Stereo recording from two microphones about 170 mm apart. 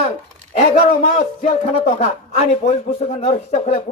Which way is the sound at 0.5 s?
45° left (ahead or behind).